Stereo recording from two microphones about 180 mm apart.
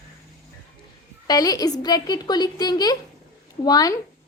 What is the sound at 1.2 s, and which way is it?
A woman's voice, 20° left (ahead or behind).